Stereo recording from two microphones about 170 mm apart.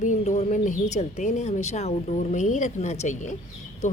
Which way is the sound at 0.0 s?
45° left (ahead or behind).